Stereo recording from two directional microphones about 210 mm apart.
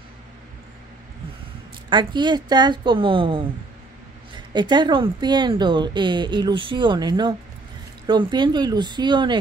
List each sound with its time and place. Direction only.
1.9 s a woman's voice: 20° right (ahead or behind)
4.6 s a woman's voice: 20° right (ahead or behind)